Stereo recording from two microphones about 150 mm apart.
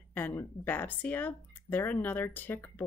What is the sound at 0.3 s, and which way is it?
Speech, 15° left (ahead or behind).